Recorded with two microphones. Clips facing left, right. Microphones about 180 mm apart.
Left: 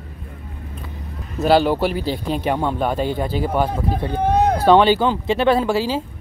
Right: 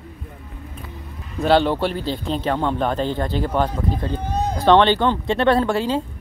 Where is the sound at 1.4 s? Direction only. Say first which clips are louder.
Left 1 dB; 5° left (ahead or behind).